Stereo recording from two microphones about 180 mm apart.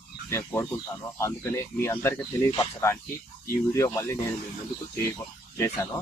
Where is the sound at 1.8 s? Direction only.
10° left (ahead or behind).